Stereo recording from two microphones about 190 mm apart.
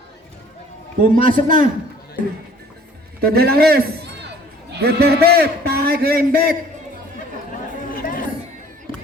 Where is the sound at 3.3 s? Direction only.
55° right (ahead or behind).